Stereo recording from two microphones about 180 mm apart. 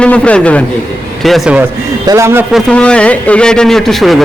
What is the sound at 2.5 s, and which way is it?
A man's voice, 5° left (ahead or behind).